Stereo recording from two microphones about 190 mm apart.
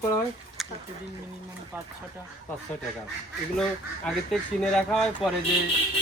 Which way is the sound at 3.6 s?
Centre (ahead or behind).